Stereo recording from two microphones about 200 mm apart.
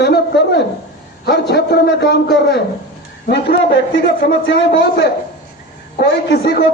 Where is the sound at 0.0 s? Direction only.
55° left (ahead or behind).